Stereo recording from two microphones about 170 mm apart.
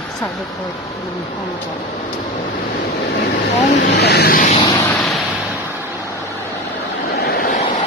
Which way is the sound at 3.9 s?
75° left (ahead or behind).